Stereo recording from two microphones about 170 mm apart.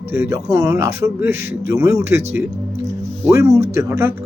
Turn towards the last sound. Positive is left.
turn(degrees=-15)  # may be behind; listen again after turning